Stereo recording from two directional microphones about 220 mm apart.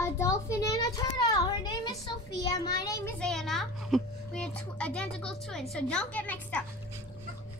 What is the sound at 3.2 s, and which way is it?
A child's voice, centre (ahead or behind).